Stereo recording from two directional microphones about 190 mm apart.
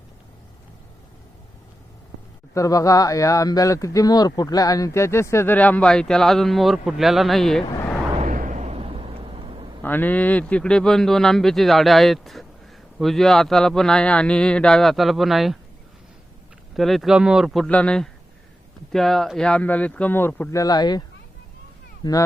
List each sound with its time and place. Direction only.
2.6 s speech: 15° left (ahead or behind); by 7.6 s centre (ahead or behind)
7.7 s vehicle: 15° left (ahead or behind)
8.2 s a sound: 45° right (ahead or behind); by 9.7 s 25° right (ahead or behind)
9.8 s speech: 10° left (ahead or behind)
16.7 s speech: centre (ahead or behind); by 21.0 s 20° left (ahead or behind)
22.0 s speech: 20° left (ahead or behind)